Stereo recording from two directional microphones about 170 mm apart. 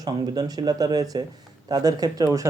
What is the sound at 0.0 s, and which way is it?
Speech, 25° right (ahead or behind).